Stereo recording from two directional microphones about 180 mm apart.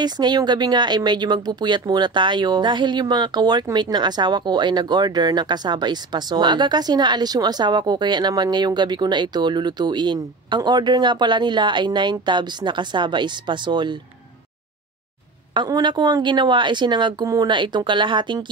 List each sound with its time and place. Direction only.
0.0 s speech: 25° right (ahead or behind)
15.5 s speech: 25° right (ahead or behind)